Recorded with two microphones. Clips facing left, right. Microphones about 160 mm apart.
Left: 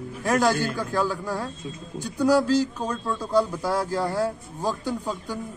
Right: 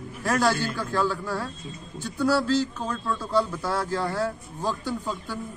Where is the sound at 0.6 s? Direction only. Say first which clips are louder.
Left 2 dB; 50° left (ahead or behind).